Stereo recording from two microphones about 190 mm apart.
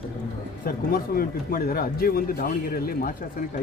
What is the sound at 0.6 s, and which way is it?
Speech, 50° left (ahead or behind).